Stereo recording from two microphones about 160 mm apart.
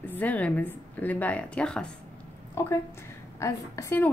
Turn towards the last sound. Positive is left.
turn(degrees=15)  # may be behind; listen again after turning